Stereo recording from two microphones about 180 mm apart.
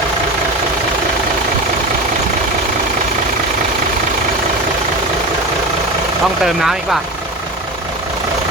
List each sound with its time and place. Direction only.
6.4 s speech: centre (ahead or behind)